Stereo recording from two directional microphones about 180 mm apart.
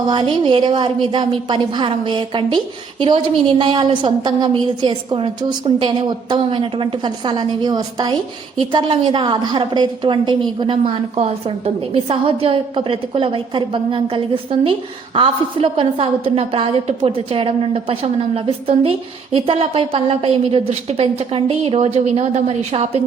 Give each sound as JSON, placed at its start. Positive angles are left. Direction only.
{"t": 0.1, "sound": "a woman's voice", "side_deg": -25}
{"t": 3.6, "sound": "a woman's voice", "side_deg": -25}